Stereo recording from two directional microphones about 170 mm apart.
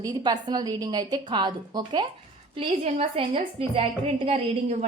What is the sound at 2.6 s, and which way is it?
A woman's voice, 40° right (ahead or behind).